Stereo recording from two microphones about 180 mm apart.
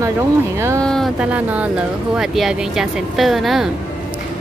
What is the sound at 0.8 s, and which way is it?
A woman's voice, 5° left (ahead or behind).